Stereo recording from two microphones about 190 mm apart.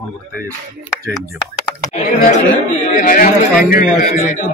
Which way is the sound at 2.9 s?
45° left (ahead or behind).